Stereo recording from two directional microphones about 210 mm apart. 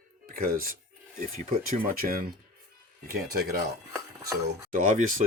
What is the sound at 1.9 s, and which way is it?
Speech, 45° right (ahead or behind).